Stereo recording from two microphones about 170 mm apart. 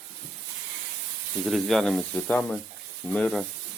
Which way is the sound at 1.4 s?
Centre (ahead or behind).